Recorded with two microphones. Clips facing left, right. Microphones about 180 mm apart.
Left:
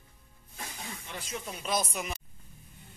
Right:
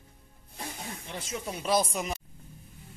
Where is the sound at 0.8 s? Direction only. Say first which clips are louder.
Right 3 dB; 30° right (ahead or behind).